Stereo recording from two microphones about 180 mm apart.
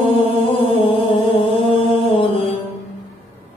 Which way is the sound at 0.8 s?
30° left (ahead or behind).